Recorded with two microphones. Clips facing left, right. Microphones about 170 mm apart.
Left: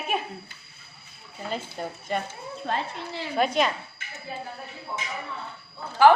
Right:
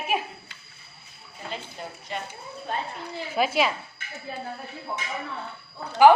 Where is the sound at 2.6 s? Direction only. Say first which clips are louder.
Left 2 dB; 90° left.